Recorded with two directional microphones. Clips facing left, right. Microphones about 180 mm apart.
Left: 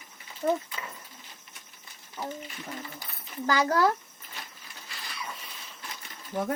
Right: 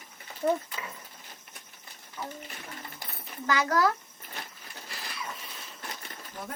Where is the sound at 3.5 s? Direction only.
30° left (ahead or behind).